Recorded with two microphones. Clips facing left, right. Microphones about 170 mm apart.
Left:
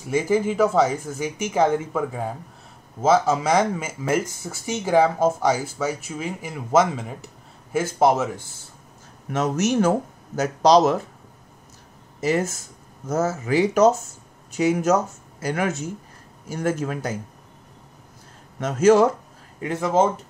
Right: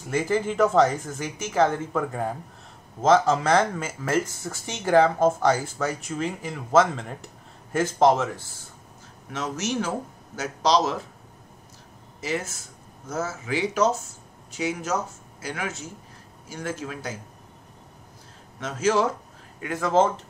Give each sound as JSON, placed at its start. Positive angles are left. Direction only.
{"t": 0.0, "sound": "speech", "side_deg": 5}
{"t": 9.3, "sound": "speech", "side_deg": 50}
{"t": 12.2, "sound": "speech", "side_deg": 45}
{"t": 18.6, "sound": "speech", "side_deg": 45}
{"t": 19.6, "sound": "speech", "side_deg": 25}